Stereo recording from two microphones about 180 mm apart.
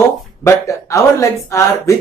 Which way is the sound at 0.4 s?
15° left (ahead or behind).